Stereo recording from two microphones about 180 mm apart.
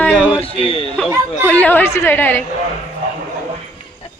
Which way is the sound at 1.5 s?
10° left (ahead or behind).